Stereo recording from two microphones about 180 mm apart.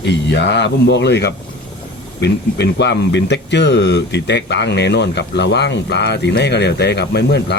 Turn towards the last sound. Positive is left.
turn(degrees=65)  # may be behind; listen again after turning